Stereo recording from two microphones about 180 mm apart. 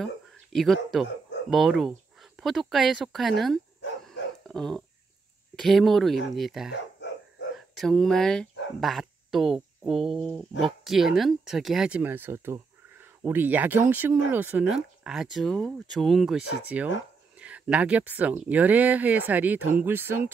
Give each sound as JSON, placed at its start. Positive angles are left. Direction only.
{"t": 0.0, "sound": "speech", "side_deg": 0}
{"t": 4.0, "sound": "dog", "side_deg": 0}
{"t": 5.6, "sound": "speech", "side_deg": 0}
{"t": 6.7, "sound": "dog", "side_deg": 80}
{"t": 7.5, "sound": "speech", "side_deg": 0}